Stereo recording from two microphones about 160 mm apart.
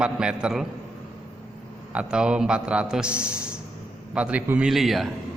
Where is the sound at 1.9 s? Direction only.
5° right (ahead or behind).